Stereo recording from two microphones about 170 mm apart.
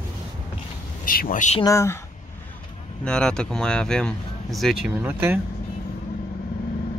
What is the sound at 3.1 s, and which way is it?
Speech, 5° left (ahead or behind).